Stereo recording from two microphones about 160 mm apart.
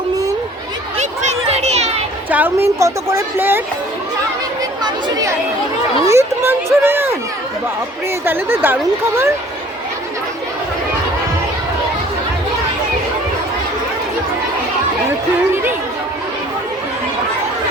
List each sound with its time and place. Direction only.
0.9 s a sound: 45° right (ahead or behind)
2.3 s a woman's voice: 15° right (ahead or behind)
4.8 s speech: 25° right (ahead or behind)
8.2 s a woman's voice: 15° right (ahead or behind)